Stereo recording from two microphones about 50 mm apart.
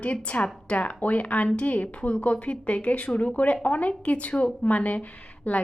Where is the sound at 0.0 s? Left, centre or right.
Left.